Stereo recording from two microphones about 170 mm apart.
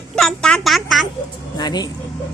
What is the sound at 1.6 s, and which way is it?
Speech, 25° left (ahead or behind).